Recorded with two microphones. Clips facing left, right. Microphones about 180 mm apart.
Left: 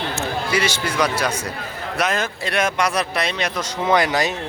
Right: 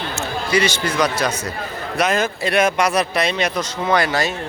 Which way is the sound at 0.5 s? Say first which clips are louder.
Right 5 dB; 5° left (ahead or behind).